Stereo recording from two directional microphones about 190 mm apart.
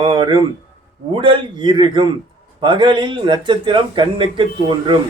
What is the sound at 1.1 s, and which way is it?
A man's voice, 25° right (ahead or behind).